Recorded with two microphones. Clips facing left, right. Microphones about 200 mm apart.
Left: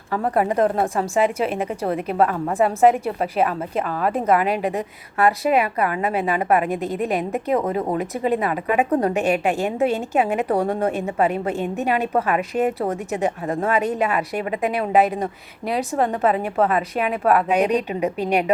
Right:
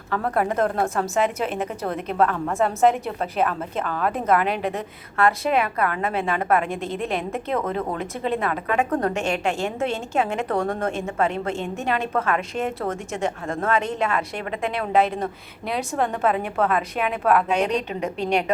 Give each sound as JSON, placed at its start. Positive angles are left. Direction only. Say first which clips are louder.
{"t": 0.1, "sound": "a woman's voice", "louder": "left 3 dB", "side_deg": 10}